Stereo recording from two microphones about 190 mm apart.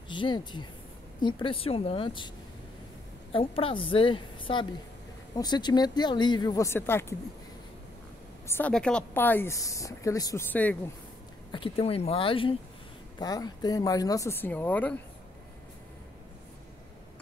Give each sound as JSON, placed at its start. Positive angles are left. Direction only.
{"t": 0.1, "sound": "speech", "side_deg": 25}
{"t": 3.3, "sound": "speech", "side_deg": 30}
{"t": 8.5, "sound": "a woman's voice", "side_deg": 10}
{"t": 11.5, "sound": "a woman's voice", "side_deg": 30}